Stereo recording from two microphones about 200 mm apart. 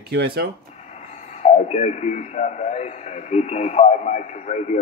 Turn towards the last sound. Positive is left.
turn(degrees=35)  # may be behind; listen again after turning